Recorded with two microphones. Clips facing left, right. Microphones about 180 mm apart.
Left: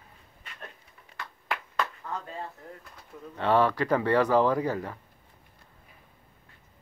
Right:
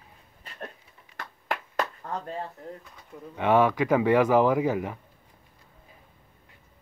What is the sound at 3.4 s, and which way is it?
A man's voice, 15° right (ahead or behind).